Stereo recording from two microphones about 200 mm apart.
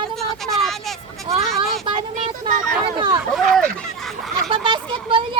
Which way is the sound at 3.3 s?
Centre (ahead or behind).